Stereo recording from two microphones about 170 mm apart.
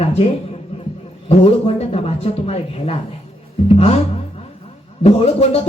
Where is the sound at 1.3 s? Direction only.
35° left (ahead or behind).